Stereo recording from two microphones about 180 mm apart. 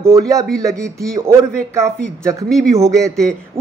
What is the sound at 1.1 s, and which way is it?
Speech, 15° right (ahead or behind).